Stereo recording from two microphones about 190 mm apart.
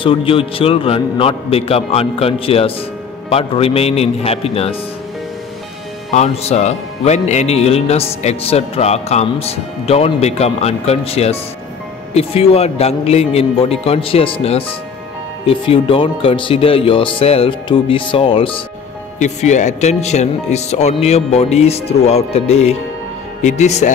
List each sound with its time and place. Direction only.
0.0 s speech: 30° left (ahead or behind)
6.1 s speech: 35° left (ahead or behind)
19.1 s speech: 40° left (ahead or behind)